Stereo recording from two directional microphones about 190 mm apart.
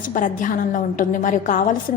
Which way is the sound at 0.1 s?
45° left (ahead or behind).